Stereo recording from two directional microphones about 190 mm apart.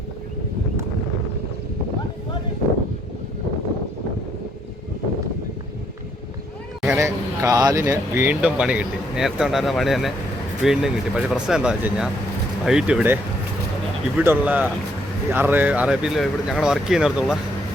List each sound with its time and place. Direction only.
6.8 s speech: 15° right (ahead or behind)
14.2 s speech: 10° right (ahead or behind)